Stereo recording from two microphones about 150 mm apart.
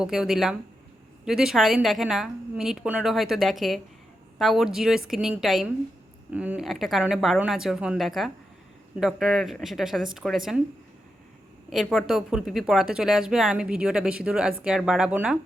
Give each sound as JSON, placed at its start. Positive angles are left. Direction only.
{"t": 0.0, "sound": "speech", "side_deg": -5}
{"t": 11.7, "sound": "speech", "side_deg": 0}